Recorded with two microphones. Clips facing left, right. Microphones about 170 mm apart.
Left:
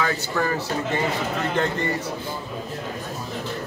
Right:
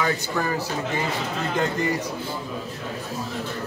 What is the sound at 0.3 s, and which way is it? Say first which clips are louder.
Speech: left 4 dB; 10° right (ahead or behind).